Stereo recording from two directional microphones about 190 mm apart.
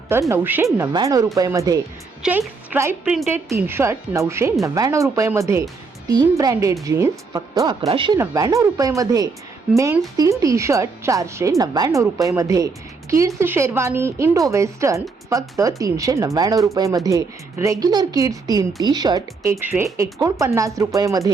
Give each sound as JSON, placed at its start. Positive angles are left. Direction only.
{"t": 0.1, "sound": "a woman's voice", "side_deg": -15}
{"t": 2.2, "sound": "a woman's voice", "side_deg": -5}